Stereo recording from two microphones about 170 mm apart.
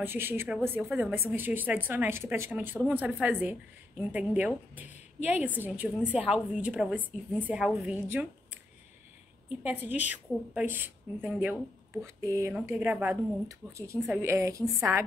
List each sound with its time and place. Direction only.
0.0 s a woman's voice: 10° right (ahead or behind)
9.6 s a woman's voice: 10° right (ahead or behind)